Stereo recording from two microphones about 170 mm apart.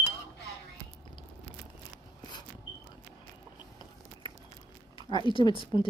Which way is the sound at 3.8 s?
25° left (ahead or behind).